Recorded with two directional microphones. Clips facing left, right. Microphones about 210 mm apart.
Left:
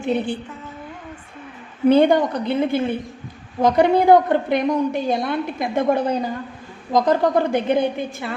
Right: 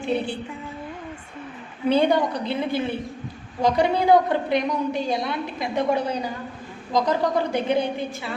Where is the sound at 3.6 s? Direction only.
55° left (ahead or behind).